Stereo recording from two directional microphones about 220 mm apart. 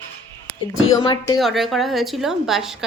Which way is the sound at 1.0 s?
20° left (ahead or behind).